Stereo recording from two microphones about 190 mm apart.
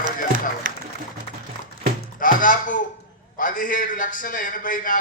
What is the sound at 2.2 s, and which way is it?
A man's voice, 45° left (ahead or behind).